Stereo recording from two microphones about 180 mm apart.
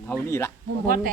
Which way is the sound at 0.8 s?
50° right (ahead or behind).